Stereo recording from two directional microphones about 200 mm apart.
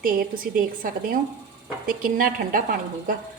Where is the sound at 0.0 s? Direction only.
45° right (ahead or behind).